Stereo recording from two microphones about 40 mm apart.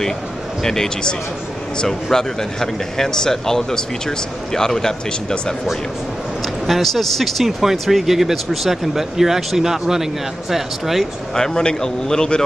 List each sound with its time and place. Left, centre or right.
0.7 s speech: centre
6.6 s speech: centre
11.3 s speech: centre